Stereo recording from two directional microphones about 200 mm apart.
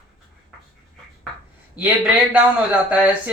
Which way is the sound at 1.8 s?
10° right (ahead or behind).